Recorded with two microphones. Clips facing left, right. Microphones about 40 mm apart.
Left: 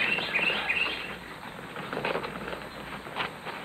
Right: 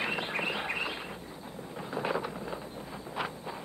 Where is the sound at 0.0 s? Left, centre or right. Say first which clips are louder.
Left 5 dB; left.